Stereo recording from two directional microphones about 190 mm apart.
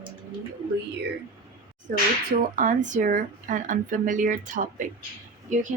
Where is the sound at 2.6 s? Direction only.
40° right (ahead or behind).